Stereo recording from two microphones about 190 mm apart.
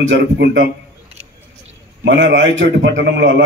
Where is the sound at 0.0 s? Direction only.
65° right (ahead or behind).